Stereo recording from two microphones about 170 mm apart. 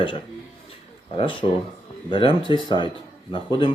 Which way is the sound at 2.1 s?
30° left (ahead or behind).